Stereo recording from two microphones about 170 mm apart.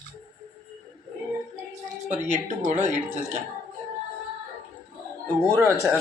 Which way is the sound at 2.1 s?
45° right (ahead or behind).